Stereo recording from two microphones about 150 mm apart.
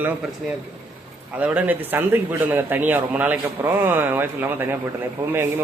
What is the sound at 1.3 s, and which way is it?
Speech, 10° right (ahead or behind).